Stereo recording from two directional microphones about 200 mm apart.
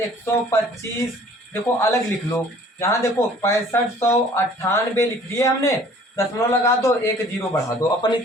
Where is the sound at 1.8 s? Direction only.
15° left (ahead or behind).